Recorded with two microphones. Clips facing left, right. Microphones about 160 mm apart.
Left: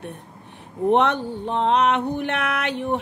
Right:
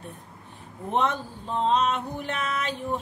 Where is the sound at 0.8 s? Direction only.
70° left (ahead or behind).